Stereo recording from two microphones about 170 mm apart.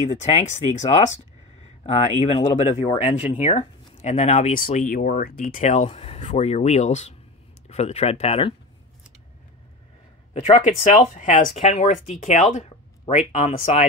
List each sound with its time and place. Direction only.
0.3 s speech: 40° left (ahead or behind)
4.6 s speech: 55° left (ahead or behind); by 8.5 s 35° left (ahead or behind)
10.4 s speech: 35° left (ahead or behind)
11.0 s speech: 45° left (ahead or behind)
13.6 s speech: 50° left (ahead or behind)